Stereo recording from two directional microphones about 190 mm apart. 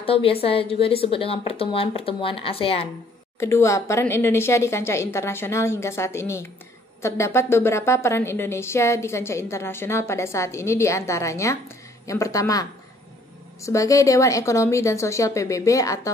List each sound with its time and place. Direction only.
0.0 s a woman's voice: 30° left (ahead or behind)
3.3 s a woman's voice: 15° left (ahead or behind)